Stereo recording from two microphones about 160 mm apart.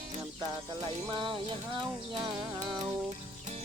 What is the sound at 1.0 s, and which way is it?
Music, 30° right (ahead or behind).